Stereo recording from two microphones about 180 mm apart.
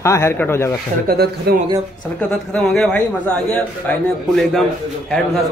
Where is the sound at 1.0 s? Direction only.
60° right (ahead or behind).